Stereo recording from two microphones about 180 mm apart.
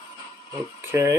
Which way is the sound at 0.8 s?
15° right (ahead or behind).